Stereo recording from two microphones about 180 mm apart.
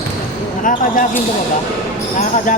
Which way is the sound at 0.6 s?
45° left (ahead or behind).